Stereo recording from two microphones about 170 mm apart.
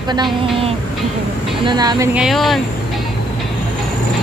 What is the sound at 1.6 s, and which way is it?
Speech, 25° right (ahead or behind).